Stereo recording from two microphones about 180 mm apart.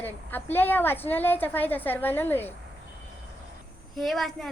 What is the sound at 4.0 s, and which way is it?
Speech, centre (ahead or behind).